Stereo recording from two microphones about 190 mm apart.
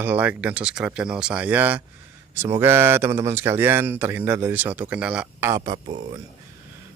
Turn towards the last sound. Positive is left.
turn(degrees=-40)  # may be behind; listen again after turning